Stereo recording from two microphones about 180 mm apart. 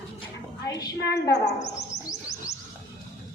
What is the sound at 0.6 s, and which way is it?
A man's voice, 20° left (ahead or behind).